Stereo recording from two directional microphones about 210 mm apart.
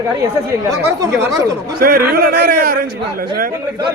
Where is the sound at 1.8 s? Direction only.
45° right (ahead or behind).